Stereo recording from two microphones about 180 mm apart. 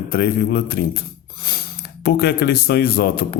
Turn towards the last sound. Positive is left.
turn(degrees=55)  # may be behind; listen again after turning